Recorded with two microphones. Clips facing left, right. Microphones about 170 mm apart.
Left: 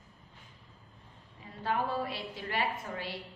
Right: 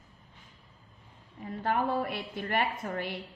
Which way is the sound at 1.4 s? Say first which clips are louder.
Right 3 dB; 55° right (ahead or behind).